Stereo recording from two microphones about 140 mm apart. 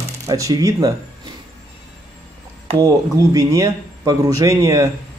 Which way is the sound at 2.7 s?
25° right (ahead or behind).